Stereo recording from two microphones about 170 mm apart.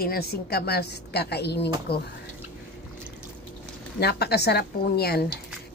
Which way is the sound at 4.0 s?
70° left (ahead or behind).